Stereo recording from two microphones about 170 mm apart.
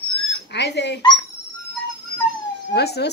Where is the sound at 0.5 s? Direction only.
90° left.